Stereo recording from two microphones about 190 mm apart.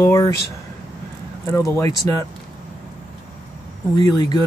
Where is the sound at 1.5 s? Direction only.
15° left (ahead or behind).